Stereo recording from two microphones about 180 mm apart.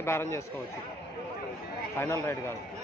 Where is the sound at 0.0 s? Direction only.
15° left (ahead or behind).